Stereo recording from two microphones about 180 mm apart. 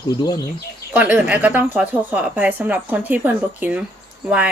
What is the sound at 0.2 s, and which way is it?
Speech, 20° left (ahead or behind).